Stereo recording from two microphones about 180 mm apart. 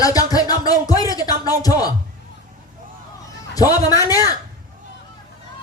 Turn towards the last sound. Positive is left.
turn(degrees=20)  # may be behind; listen again after turning